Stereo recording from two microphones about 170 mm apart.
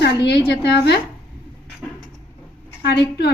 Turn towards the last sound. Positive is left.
turn(degrees=75)  # may be behind; listen again after turning